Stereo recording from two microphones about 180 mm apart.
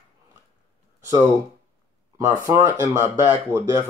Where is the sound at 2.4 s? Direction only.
15° right (ahead or behind).